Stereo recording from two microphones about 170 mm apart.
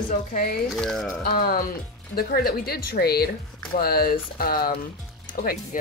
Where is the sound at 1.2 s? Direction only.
60° left (ahead or behind).